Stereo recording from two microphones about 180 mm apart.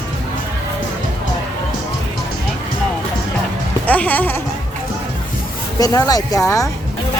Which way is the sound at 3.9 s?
10° left (ahead or behind).